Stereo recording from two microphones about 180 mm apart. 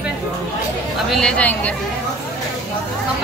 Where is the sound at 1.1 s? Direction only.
5° left (ahead or behind).